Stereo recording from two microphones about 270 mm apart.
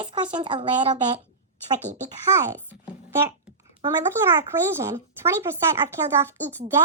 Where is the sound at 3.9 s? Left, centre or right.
Centre.